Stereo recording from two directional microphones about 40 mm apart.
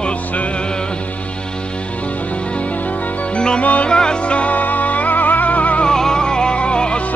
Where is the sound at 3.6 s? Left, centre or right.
Left.